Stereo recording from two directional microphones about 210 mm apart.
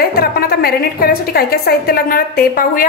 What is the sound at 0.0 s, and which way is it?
A woman's voice, 45° left (ahead or behind).